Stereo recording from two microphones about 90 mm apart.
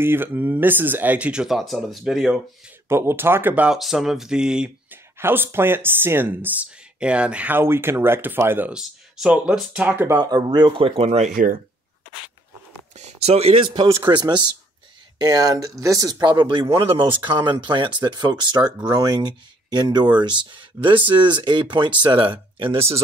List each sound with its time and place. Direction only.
0.0 s speech: 25° right (ahead or behind); by 2.4 s 5° right (ahead or behind)
2.9 s speech: 25° right (ahead or behind)
3.7 s speech: 5° right (ahead or behind)
5.2 s speech: 25° right (ahead or behind)
8.6 s speech: 5° right (ahead or behind); by 10.2 s 25° right (ahead or behind)
10.2 s speech: 55° right (ahead or behind)
13.3 s a man's voice: 90° right
14.0 s speech: 55° right (ahead or behind)
15.1 s speech: 45° right (ahead or behind); by 23.0 s 90° right